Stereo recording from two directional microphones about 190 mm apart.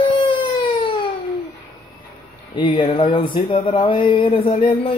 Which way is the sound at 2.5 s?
25° left (ahead or behind).